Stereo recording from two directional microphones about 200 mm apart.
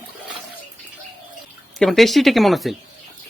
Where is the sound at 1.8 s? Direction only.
Centre (ahead or behind).